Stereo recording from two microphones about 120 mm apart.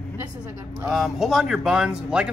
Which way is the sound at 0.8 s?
5° right (ahead or behind).